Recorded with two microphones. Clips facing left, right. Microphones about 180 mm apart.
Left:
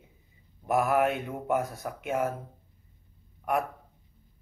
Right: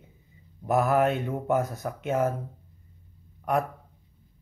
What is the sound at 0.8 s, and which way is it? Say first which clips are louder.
Mantra: right 2 dB; centre (ahead or behind).